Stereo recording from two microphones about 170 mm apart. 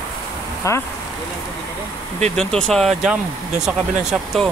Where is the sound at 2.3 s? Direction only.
5° left (ahead or behind).